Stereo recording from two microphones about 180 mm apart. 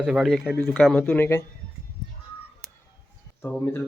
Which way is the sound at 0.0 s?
Centre (ahead or behind).